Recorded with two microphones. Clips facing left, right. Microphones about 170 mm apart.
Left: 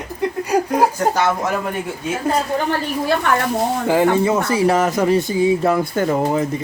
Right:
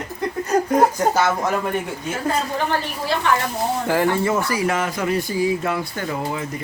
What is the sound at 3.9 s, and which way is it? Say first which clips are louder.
Speech: left 4 dB; 15° left (ahead or behind).